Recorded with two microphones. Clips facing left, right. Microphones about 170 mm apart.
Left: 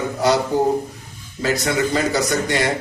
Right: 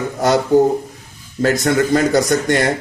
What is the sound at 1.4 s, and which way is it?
A man's voice, 50° right (ahead or behind).